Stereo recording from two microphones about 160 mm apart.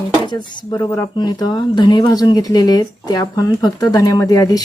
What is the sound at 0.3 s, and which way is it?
Speech, 25° left (ahead or behind).